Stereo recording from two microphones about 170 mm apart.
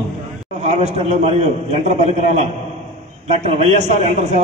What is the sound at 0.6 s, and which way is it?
A man's voice, 40° right (ahead or behind).